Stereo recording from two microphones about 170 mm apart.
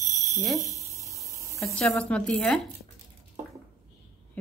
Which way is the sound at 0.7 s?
20° right (ahead or behind).